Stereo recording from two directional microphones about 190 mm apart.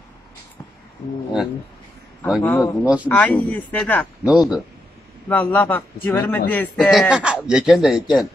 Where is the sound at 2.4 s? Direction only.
15° left (ahead or behind).